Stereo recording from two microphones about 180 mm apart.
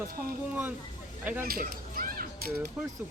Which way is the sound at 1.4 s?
55° right (ahead or behind).